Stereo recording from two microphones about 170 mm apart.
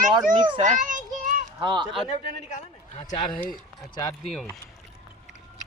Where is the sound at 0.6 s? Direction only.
50° right (ahead or behind).